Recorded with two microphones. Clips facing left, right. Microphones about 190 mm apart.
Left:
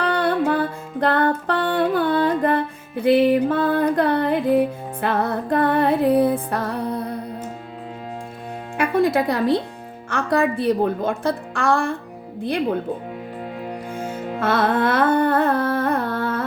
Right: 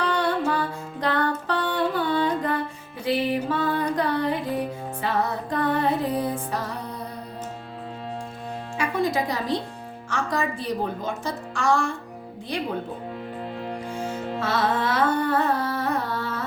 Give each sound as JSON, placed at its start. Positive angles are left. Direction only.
{"t": 0.0, "sound": "music", "side_deg": 55}
{"t": 8.8, "sound": "a woman's voice", "side_deg": 55}
{"t": 14.3, "sound": "carnatic music", "side_deg": 55}